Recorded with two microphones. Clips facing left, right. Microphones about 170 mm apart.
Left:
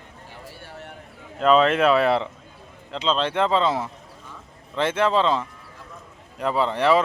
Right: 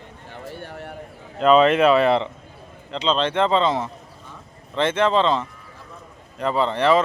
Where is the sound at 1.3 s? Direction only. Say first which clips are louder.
Right 3 dB; centre (ahead or behind).